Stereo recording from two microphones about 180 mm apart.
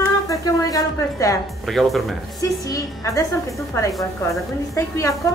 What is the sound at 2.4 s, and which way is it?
Speech, 20° left (ahead or behind).